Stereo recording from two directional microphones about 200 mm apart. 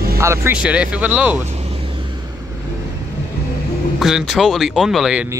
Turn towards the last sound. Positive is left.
turn(degrees=0)  # may be behind; listen again after turning